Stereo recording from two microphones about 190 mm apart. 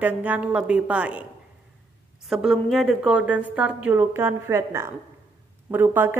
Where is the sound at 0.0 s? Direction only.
10° right (ahead or behind).